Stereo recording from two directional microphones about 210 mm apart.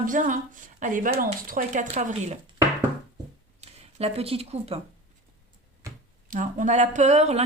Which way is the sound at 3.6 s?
30° right (ahead or behind).